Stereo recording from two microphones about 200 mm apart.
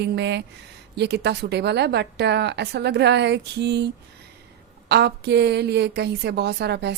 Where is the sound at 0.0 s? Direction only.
60° right (ahead or behind).